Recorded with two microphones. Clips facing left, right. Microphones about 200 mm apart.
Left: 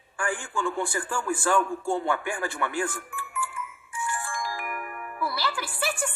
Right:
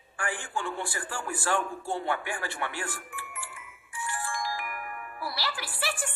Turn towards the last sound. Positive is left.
turn(degrees=45)  # may be behind; listen again after turning